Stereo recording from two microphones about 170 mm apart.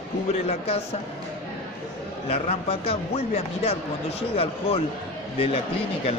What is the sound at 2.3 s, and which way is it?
A man's voice, 35° left (ahead or behind).